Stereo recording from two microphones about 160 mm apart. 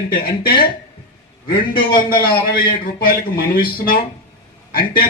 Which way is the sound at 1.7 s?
65° left (ahead or behind).